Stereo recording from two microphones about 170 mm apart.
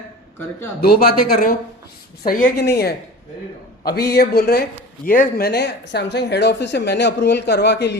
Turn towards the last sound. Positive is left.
turn(degrees=90)